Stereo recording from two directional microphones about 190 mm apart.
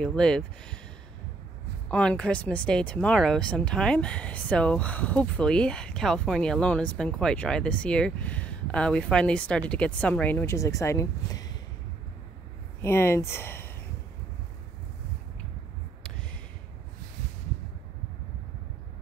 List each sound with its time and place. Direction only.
0.0 s speech: 5° left (ahead or behind)
1.9 s speech: 5° left (ahead or behind)
12.8 s speech: 15° left (ahead or behind)